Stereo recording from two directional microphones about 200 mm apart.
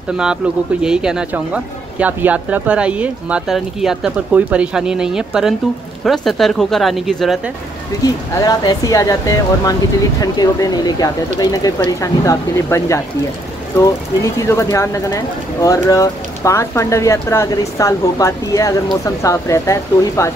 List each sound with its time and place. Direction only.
0.8 s speech: 5° right (ahead or behind)
8.4 s speech: 15° left (ahead or behind)
14.5 s speech: 15° left (ahead or behind)